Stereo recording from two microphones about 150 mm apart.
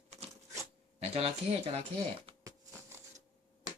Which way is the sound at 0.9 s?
40° right (ahead or behind).